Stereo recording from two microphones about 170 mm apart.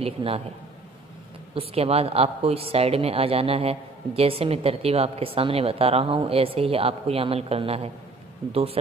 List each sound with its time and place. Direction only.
0.0 s speech: 35° right (ahead or behind)
1.5 s speech: 35° right (ahead or behind)